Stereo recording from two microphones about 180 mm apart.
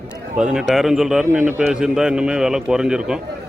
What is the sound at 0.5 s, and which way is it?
A man's voice, centre (ahead or behind).